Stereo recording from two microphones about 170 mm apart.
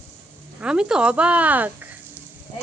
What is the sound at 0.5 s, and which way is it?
Speech, 5° right (ahead or behind).